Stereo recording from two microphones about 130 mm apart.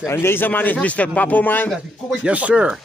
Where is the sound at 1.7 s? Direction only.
5° right (ahead or behind).